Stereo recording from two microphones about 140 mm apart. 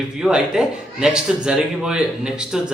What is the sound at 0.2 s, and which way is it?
A man's voice, 5° right (ahead or behind).